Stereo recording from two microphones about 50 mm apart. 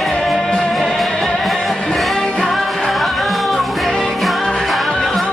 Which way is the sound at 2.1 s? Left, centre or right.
Centre.